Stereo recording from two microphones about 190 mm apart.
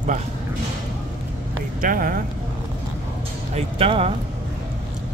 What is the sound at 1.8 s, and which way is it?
Speech, 45° right (ahead or behind).